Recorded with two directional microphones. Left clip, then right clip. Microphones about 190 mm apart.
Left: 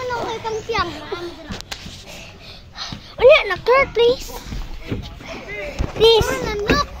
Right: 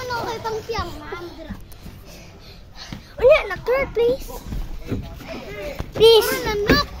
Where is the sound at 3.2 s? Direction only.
20° left (ahead or behind).